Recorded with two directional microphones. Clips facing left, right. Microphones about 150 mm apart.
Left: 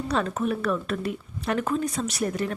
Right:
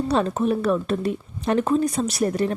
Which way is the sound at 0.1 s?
30° right (ahead or behind).